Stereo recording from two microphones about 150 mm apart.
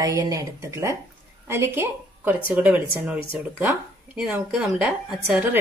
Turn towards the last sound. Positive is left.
turn(degrees=-10)  # may be behind; listen again after turning